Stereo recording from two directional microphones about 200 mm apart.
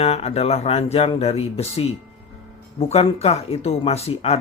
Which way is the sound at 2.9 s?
30° left (ahead or behind).